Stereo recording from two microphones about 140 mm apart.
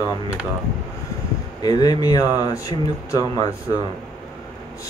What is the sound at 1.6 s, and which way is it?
Speech, 30° left (ahead or behind).